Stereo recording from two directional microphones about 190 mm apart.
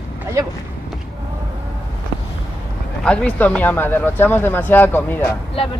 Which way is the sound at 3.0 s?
5° left (ahead or behind).